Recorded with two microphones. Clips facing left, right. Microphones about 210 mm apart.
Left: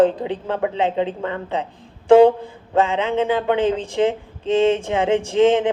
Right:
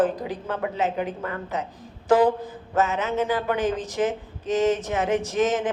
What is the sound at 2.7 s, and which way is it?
Speech, 30° left (ahead or behind).